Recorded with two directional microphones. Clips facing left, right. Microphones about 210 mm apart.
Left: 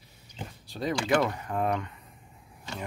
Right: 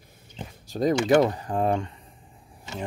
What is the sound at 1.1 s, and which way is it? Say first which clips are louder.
Speech: right 3 dB; 30° right (ahead or behind).